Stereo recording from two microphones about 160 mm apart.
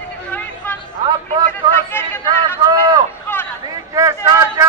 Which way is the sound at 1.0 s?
30° right (ahead or behind).